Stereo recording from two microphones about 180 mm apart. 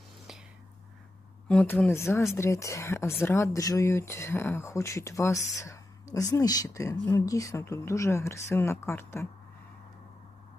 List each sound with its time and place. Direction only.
1.5 s speech: 10° left (ahead or behind)